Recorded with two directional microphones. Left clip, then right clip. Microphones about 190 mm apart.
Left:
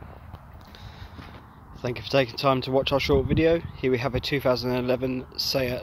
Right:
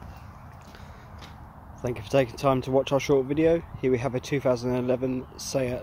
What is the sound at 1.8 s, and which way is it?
Speech, centre (ahead or behind).